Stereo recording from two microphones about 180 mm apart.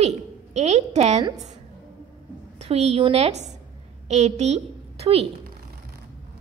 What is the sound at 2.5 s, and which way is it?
A woman's voice, 35° right (ahead or behind).